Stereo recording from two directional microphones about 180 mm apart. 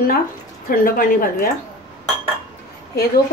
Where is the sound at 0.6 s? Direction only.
50° left (ahead or behind).